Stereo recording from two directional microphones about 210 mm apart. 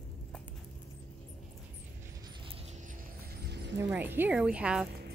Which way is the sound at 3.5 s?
55° right (ahead or behind).